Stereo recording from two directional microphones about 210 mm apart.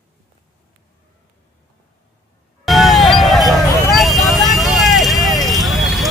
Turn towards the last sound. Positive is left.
turn(degrees=0)  # may be behind; listen again after turning